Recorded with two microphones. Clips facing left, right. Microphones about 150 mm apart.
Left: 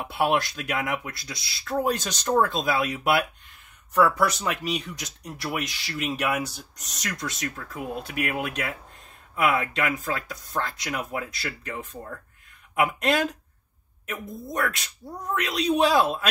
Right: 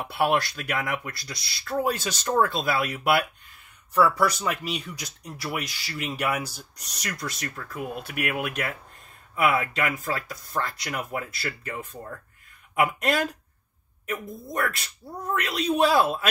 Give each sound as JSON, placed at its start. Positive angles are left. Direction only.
{"t": 0.1, "sound": "speech", "side_deg": 0}
{"t": 7.9, "sound": "speech", "side_deg": 30}
{"t": 9.3, "sound": "speech", "side_deg": 0}
{"t": 12.8, "sound": "speech", "side_deg": 0}